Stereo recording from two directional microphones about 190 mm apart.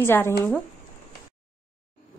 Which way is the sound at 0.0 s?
15° left (ahead or behind).